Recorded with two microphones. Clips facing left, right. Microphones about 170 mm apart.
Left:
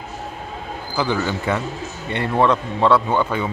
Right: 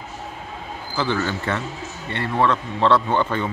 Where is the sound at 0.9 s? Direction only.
15° left (ahead or behind).